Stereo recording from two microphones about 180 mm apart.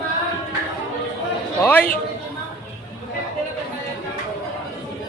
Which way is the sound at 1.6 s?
10° left (ahead or behind).